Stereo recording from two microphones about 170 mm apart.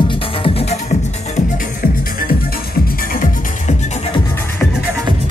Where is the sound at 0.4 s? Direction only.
35° left (ahead or behind).